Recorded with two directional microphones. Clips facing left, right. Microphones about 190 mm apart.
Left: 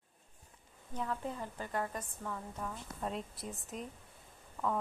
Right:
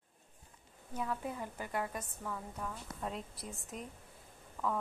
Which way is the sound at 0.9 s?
10° right (ahead or behind).